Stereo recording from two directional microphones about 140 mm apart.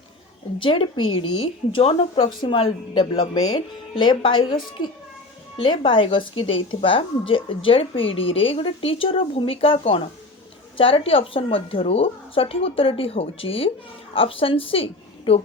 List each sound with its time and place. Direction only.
0.6 s a woman's voice: 40° left (ahead or behind)
5.5 s a woman's voice: 35° left (ahead or behind)